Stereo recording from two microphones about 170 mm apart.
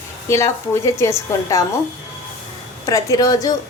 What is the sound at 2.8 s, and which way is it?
Speech, 20° left (ahead or behind).